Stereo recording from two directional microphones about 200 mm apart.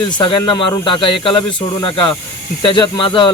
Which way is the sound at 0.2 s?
25° left (ahead or behind).